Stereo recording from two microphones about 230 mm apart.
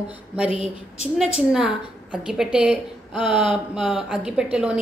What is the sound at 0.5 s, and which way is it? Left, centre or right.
Speech, left.